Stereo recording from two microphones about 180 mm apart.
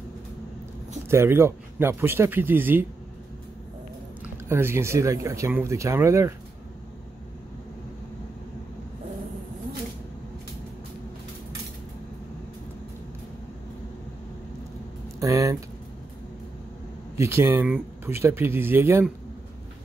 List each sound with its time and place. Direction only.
1.0 s speech: 15° right (ahead or behind)
4.5 s speech: 15° right (ahead or behind)
15.1 s a sound: 20° right (ahead or behind)
17.2 s speech: 15° right (ahead or behind)